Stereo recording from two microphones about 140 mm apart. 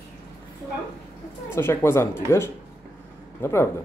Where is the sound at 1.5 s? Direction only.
20° left (ahead or behind).